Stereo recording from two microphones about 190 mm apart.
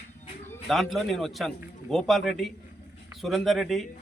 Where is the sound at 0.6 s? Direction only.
Centre (ahead or behind).